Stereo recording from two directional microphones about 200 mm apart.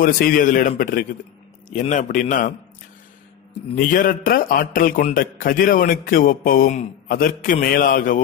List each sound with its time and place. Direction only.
0.0 s a man's voice: 45° left (ahead or behind)
3.7 s a man's voice: 45° left (ahead or behind)